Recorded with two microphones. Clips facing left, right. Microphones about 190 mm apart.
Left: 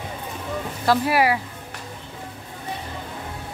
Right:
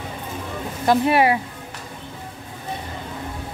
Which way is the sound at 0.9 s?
25° right (ahead or behind).